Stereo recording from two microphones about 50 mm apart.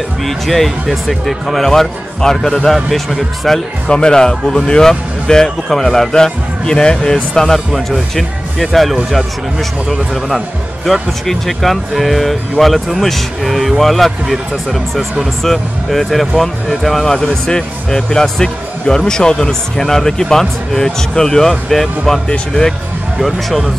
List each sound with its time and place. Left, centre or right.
0.2 s speech: centre
3.9 s speech: centre